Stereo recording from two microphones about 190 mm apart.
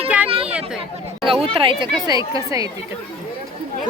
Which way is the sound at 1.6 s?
25° right (ahead or behind).